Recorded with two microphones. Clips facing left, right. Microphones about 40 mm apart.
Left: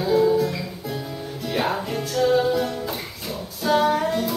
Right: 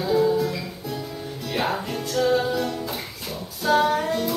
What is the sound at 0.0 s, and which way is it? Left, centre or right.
Music, centre.